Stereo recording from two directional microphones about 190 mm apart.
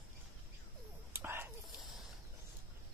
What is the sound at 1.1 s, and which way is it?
Whispering, 10° right (ahead or behind).